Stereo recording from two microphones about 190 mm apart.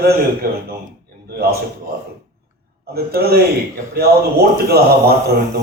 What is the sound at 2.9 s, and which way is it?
A man's voice, 55° right (ahead or behind).